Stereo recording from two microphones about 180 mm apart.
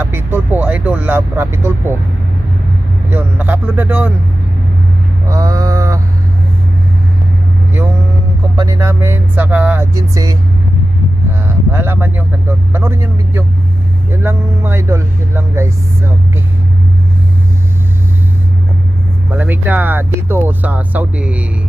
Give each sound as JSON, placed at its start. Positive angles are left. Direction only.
{"t": 0.0, "sound": "speech", "side_deg": -10}
{"t": 3.1, "sound": "speech", "side_deg": -10}
{"t": 5.3, "sound": "a sound", "side_deg": -20}
{"t": 8.5, "sound": "speech", "side_deg": -15}
{"t": 11.4, "sound": "speech", "side_deg": -10}
{"t": 19.3, "sound": "speech", "side_deg": -10}